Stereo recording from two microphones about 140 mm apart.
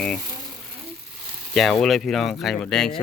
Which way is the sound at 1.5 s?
Centre (ahead or behind).